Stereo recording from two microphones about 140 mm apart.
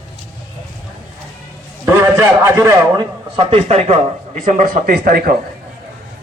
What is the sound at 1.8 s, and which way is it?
A man's voice, 20° right (ahead or behind).